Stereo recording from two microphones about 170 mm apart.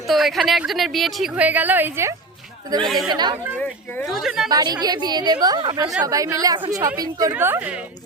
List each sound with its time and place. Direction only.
0.1 s speech: centre (ahead or behind)
2.8 s speech: centre (ahead or behind)
3.1 s a woman's voice: 25° right (ahead or behind)
4.0 s speech: centre (ahead or behind)
4.4 s a woman's voice: 25° right (ahead or behind)